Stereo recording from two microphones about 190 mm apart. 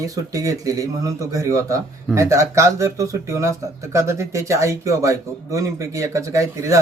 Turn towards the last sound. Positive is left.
turn(degrees=-15)  # may be behind; listen again after turning